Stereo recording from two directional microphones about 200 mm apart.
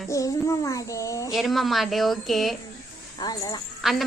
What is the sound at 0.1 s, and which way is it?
Child singing, 15° left (ahead or behind).